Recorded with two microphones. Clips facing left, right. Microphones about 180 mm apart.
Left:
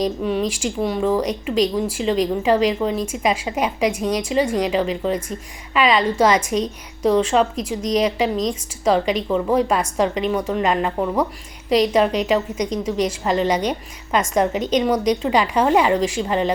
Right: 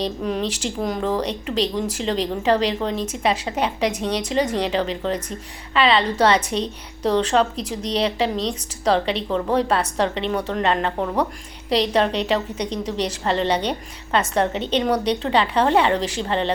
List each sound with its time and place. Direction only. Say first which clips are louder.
0.0 s speech: left 3 dB; centre (ahead or behind)